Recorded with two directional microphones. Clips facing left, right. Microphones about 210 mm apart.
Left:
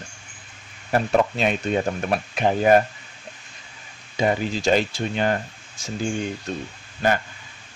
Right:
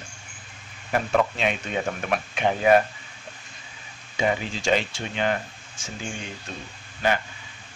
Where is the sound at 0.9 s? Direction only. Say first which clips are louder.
Left 3 dB; 40° left (ahead or behind).